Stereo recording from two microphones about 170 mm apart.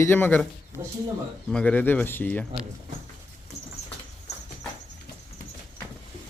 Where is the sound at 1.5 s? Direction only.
5° left (ahead or behind).